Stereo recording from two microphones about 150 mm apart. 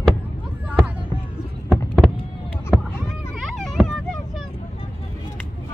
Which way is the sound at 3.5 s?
Centre (ahead or behind).